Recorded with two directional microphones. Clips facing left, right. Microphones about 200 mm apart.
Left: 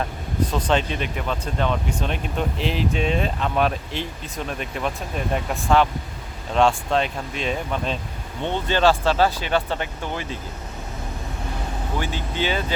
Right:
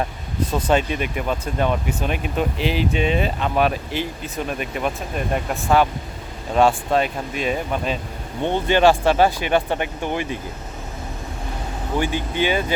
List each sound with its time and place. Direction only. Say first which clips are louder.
0.7 s speech: right 6 dB; 10° right (ahead or behind)
11.9 s speech: right 5 dB; 15° right (ahead or behind)